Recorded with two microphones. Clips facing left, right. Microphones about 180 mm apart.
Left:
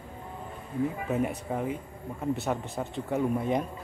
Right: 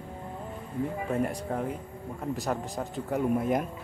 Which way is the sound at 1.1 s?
5° left (ahead or behind).